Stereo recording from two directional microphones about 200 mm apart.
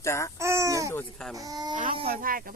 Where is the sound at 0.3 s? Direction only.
15° right (ahead or behind).